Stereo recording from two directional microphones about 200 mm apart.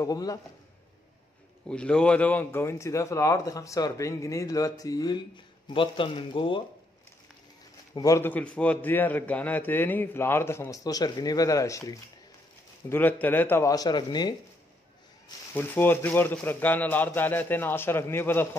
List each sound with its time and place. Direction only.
0.0 s speech: 15° left (ahead or behind)
1.7 s speech: 5° left (ahead or behind); by 6.6 s 25° left (ahead or behind)
7.9 s speech: 15° left (ahead or behind)
15.5 s speech: 10° left (ahead or behind)